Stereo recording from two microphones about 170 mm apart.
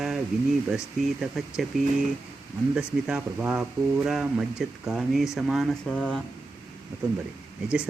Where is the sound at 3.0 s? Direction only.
5° right (ahead or behind).